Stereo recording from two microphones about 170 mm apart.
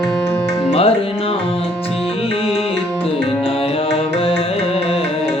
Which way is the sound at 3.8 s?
35° left (ahead or behind).